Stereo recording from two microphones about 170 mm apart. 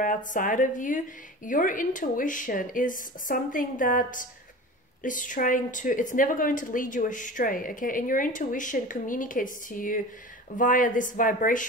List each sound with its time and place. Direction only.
0.0 s a woman's voice: 50° left (ahead or behind)